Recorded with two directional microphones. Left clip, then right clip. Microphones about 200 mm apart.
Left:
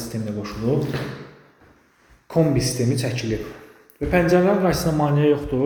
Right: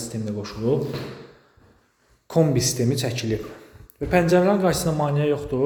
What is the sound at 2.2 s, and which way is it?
Speech, 20° right (ahead or behind).